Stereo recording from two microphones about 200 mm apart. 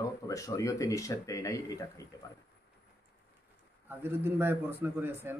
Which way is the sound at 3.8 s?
10° right (ahead or behind).